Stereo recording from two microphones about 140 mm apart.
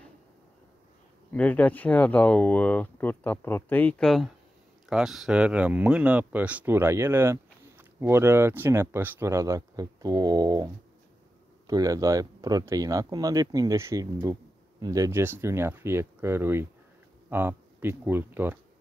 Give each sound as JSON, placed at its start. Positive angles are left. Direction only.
{"t": 1.3, "sound": "speech", "side_deg": 10}